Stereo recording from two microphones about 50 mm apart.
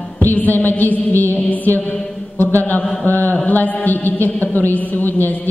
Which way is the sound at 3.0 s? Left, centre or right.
Left.